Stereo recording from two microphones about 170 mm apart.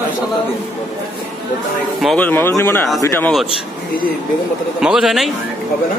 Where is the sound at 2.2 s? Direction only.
10° left (ahead or behind).